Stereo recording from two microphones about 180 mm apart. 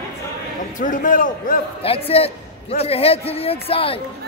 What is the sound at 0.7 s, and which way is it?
Speech, 50° left (ahead or behind).